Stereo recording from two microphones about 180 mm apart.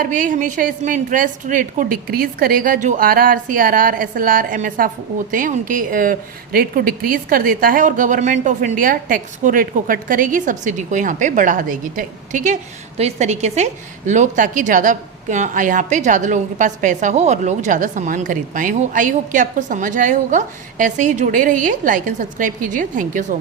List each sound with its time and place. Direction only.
0.0 s a woman's voice: 45° right (ahead or behind)